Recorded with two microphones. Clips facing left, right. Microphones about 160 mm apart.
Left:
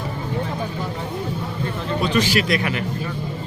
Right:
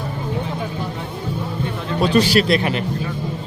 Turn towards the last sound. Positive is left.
turn(degrees=-30)  # may be behind; listen again after turning